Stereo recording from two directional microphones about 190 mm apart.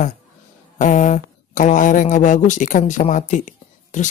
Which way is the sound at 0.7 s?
45° left (ahead or behind).